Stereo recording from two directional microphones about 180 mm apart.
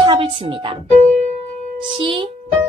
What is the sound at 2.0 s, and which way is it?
Speech, 25° right (ahead or behind).